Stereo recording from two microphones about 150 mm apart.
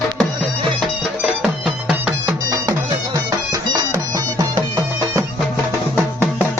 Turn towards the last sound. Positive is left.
turn(degrees=-25)  # may be behind; listen again after turning